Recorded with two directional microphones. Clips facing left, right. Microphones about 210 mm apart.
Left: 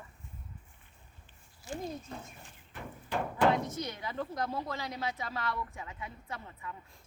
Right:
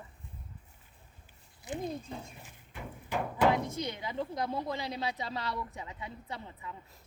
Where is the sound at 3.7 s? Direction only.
30° right (ahead or behind).